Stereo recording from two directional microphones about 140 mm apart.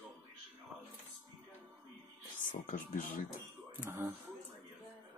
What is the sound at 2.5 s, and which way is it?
Speech, 70° left (ahead or behind).